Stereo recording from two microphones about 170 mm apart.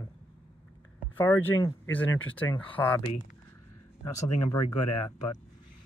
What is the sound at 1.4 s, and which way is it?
Speech, 10° left (ahead or behind).